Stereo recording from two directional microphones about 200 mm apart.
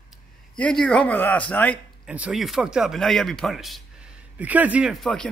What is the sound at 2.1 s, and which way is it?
Speech, 5° right (ahead or behind).